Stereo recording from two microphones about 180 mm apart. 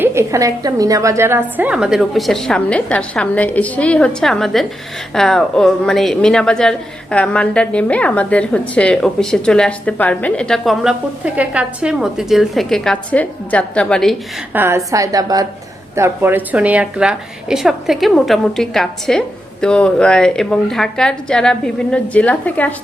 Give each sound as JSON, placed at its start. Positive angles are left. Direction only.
{"t": 0.0, "sound": "a man's voice", "side_deg": -15}
{"t": 14.5, "sound": "a woman's voice", "side_deg": -10}